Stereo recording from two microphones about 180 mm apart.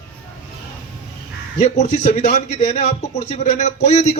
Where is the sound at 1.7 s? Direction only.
40° left (ahead or behind).